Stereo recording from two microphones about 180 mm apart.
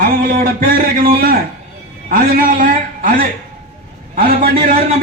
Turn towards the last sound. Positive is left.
turn(degrees=-50)  # may be behind; listen again after turning